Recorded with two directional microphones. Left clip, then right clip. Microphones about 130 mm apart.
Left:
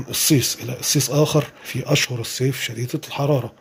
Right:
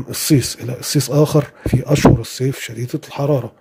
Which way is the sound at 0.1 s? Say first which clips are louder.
Right 2 dB; 50° right (ahead or behind).